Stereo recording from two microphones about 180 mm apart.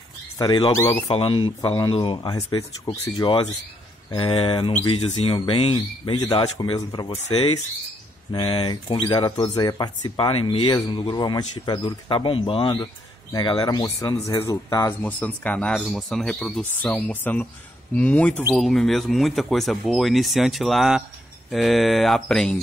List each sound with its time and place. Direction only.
0.4 s speech: 25° left (ahead or behind)
0.7 s speech: 15° left (ahead or behind)
1.1 s speech: 30° left (ahead or behind); by 22.6 s 5° left (ahead or behind)